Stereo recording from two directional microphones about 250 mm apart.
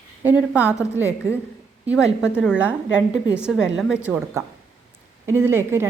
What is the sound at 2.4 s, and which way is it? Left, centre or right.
A woman's voice, centre.